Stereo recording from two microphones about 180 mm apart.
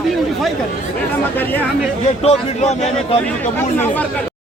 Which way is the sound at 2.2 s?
35° left (ahead or behind).